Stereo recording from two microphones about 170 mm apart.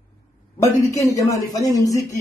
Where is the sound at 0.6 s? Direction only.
20° left (ahead or behind).